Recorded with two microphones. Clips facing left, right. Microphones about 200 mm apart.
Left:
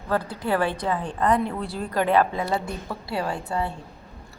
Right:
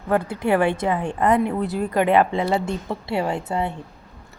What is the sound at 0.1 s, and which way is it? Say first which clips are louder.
A woman's voice: right 5 dB; 20° right (ahead or behind).